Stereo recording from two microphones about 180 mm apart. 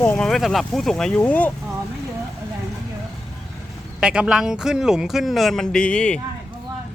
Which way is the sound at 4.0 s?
5° right (ahead or behind).